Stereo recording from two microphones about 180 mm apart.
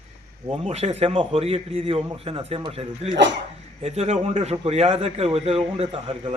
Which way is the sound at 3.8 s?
35° right (ahead or behind).